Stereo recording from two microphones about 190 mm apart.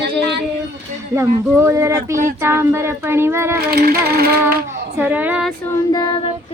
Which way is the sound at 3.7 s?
55° right (ahead or behind).